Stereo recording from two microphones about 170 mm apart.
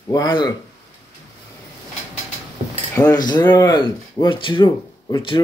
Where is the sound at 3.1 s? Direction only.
25° left (ahead or behind).